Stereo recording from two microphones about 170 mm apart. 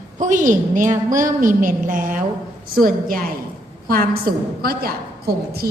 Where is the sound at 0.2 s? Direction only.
50° right (ahead or behind).